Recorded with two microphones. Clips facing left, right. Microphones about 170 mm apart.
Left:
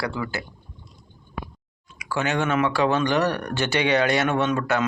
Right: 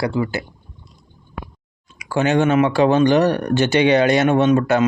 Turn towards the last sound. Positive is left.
turn(degrees=-20)  # may be behind; listen again after turning